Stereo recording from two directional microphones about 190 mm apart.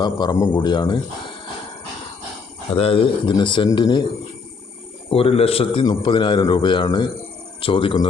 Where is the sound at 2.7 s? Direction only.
30° left (ahead or behind).